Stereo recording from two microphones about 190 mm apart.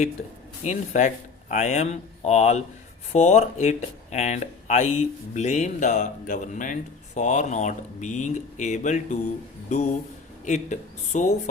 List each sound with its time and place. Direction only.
0.6 s speech: 40° left (ahead or behind)